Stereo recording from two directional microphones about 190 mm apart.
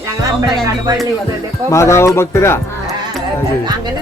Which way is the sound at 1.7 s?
15° left (ahead or behind).